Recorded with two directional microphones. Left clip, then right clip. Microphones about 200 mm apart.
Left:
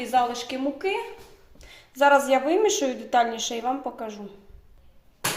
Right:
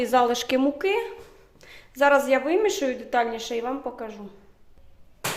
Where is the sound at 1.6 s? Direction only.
15° right (ahead or behind).